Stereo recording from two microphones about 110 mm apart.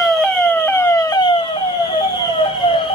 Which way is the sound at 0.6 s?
25° left (ahead or behind).